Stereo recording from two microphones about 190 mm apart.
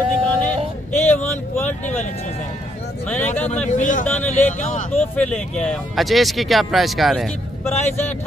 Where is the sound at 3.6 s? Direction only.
40° left (ahead or behind).